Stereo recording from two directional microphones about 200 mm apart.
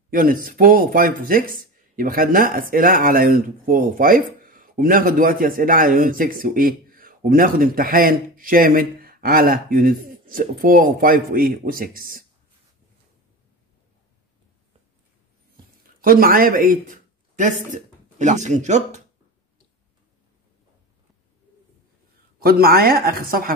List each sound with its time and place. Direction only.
0.1 s speech: 45° right (ahead or behind)
16.0 s speech: 45° right (ahead or behind)
22.4 s speech: 50° right (ahead or behind)